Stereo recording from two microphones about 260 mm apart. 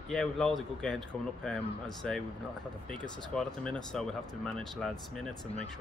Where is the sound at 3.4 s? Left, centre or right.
Centre.